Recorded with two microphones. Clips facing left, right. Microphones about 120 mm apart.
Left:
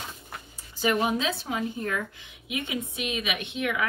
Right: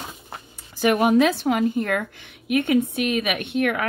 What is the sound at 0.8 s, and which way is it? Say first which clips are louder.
A woman's voice: right 8 dB; 65° right (ahead or behind).